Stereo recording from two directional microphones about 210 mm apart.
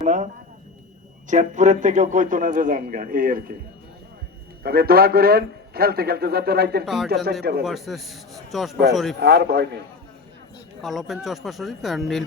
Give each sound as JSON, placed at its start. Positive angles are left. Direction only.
{"t": 0.0, "sound": "a sound", "side_deg": -35}
{"t": 1.3, "sound": "a man's voice", "side_deg": -35}
{"t": 4.6, "sound": "a man's voice", "side_deg": -45}
{"t": 6.8, "sound": "speech", "side_deg": 0}
{"t": 9.2, "sound": "a man's voice", "side_deg": -50}
{"t": 10.8, "sound": "speech", "side_deg": 0}